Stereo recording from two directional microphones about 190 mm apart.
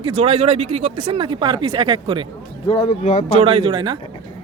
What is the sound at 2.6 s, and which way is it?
Speech, 20° left (ahead or behind).